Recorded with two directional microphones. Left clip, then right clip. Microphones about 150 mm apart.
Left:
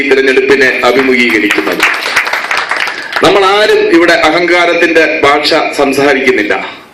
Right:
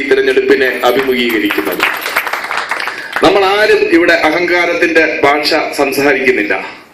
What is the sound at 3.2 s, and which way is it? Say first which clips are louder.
A man's voice: left 2 dB; 30° right (ahead or behind).